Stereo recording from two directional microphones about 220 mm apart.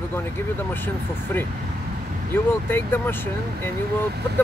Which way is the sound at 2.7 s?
10° left (ahead or behind).